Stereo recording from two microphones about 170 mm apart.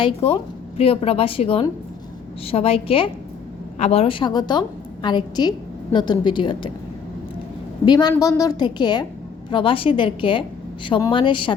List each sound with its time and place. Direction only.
0.0 s a woman's voice: 35° left (ahead or behind)
7.9 s a woman's voice: 25° left (ahead or behind)